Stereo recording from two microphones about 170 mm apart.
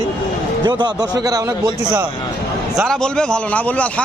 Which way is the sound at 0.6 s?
25° right (ahead or behind).